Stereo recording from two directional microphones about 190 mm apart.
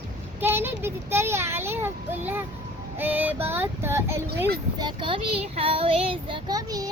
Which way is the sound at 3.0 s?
10° right (ahead or behind).